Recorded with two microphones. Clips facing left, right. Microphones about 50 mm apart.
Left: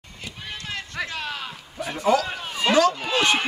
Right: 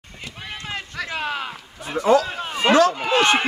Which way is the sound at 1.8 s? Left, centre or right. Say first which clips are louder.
Right 4 dB; right.